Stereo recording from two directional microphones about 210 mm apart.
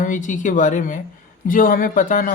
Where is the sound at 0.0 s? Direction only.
35° left (ahead or behind).